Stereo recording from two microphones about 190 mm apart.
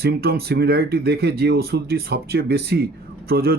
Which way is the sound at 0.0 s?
55° right (ahead or behind).